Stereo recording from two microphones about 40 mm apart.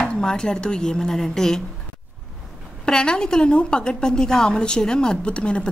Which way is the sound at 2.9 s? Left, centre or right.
Centre.